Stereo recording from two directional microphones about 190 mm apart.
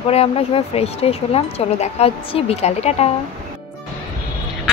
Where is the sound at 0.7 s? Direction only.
30° left (ahead or behind).